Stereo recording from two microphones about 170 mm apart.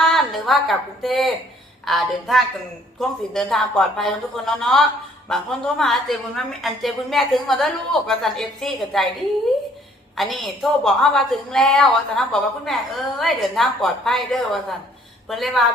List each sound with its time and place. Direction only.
0.2 s a woman's voice: centre (ahead or behind)
10.2 s a woman's voice: centre (ahead or behind)